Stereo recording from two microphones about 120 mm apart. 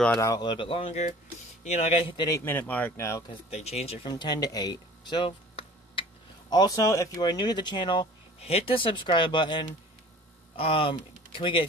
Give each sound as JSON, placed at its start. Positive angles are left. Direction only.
{"t": 0.2, "sound": "speech", "side_deg": 30}
{"t": 1.6, "sound": "speech", "side_deg": 65}
{"t": 2.2, "sound": "a man's voice", "side_deg": 25}
{"t": 2.5, "sound": "speech", "side_deg": 15}
{"t": 3.4, "sound": "speech", "side_deg": 65}
{"t": 4.0, "sound": "speech", "side_deg": 40}
{"t": 6.5, "sound": "speech", "side_deg": 30}
{"t": 8.4, "sound": "speech", "side_deg": 55}